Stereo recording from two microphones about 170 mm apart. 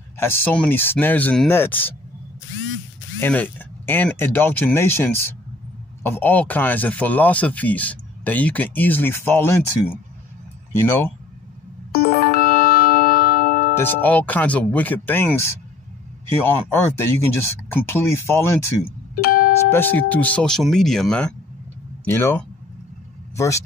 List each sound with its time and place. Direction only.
0.2 s speech: 15° left (ahead or behind)
3.2 s speech: 10° left (ahead or behind)
11.9 s music: 60° left (ahead or behind)
13.7 s speech: 10° left (ahead or behind)
19.2 s music: 60° left (ahead or behind)
19.7 s speech: 10° left (ahead or behind)